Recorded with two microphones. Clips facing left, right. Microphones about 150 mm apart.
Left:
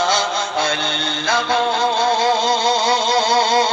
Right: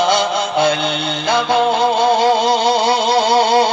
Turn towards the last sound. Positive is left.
turn(degrees=-30)  # may be behind; listen again after turning